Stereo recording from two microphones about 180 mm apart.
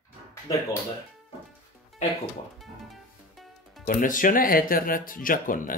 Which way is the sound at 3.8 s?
50° left (ahead or behind).